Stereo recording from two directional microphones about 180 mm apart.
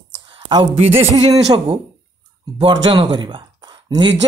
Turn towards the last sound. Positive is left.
turn(degrees=-25)  # may be behind; listen again after turning